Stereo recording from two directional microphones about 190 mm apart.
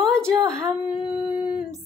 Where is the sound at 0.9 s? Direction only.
5° right (ahead or behind).